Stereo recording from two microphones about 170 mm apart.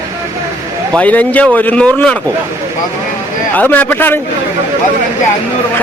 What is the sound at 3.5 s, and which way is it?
Speech, 10° left (ahead or behind).